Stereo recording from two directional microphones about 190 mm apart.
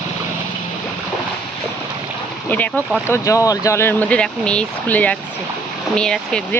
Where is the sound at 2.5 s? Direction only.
10° left (ahead or behind).